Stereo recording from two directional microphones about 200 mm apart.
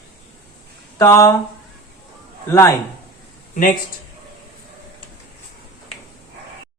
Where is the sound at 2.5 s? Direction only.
15° left (ahead or behind).